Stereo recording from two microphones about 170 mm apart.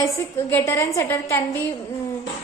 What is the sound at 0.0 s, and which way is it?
A woman's voice, 15° left (ahead or behind).